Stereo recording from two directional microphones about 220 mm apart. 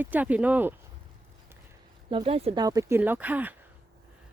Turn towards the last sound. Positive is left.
turn(degrees=-5)  # may be behind; listen again after turning